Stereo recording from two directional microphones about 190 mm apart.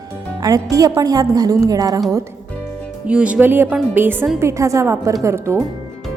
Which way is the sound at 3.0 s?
5° right (ahead or behind).